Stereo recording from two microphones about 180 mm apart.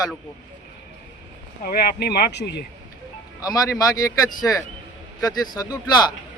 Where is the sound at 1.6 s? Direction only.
55° left (ahead or behind).